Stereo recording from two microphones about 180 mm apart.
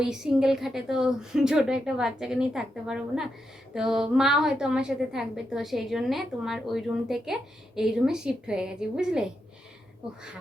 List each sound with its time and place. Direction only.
0.0 s a woman's voice: 5° right (ahead or behind)